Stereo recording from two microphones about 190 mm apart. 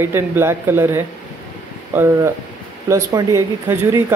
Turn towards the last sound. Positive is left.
turn(degrees=-15)  # may be behind; listen again after turning